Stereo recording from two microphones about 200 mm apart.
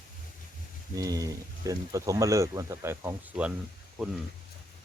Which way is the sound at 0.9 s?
15° right (ahead or behind).